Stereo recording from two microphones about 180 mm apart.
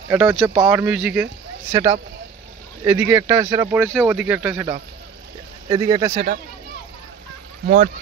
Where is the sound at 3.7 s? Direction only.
5° right (ahead or behind).